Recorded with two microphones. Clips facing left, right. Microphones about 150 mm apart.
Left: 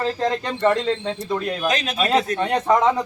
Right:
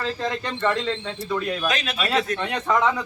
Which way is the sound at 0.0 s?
40° left (ahead or behind).